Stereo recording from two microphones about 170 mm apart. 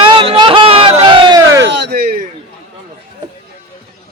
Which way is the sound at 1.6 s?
90° right.